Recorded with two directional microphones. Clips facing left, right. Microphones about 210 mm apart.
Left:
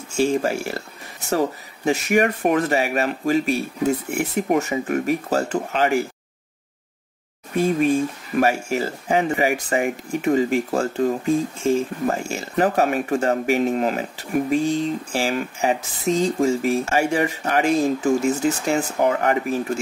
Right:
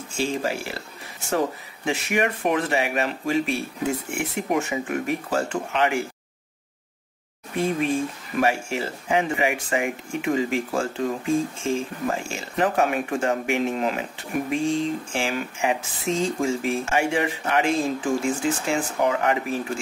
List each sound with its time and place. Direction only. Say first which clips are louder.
0.2 s speech: left 6 dB; 45° left (ahead or behind)
1.9 s speech: left 5 dB; 45° left (ahead or behind)
8.4 s speech: left 3 dB; 40° left (ahead or behind)